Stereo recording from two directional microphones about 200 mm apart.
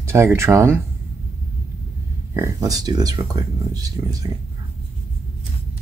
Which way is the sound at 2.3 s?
15° right (ahead or behind).